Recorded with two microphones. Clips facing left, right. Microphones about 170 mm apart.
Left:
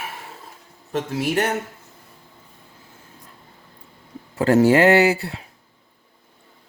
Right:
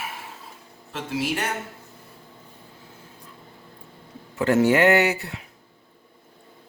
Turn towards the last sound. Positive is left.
turn(degrees=30)  # may be behind; listen again after turning